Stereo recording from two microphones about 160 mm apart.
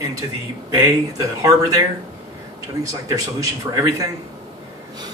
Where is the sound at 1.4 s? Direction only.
25° right (ahead or behind).